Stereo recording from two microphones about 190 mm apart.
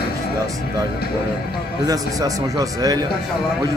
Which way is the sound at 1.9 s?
20° right (ahead or behind).